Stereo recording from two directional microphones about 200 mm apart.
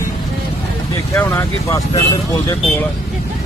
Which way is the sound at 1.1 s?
10° left (ahead or behind).